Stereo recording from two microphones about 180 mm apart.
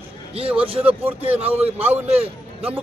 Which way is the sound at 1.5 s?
10° right (ahead or behind).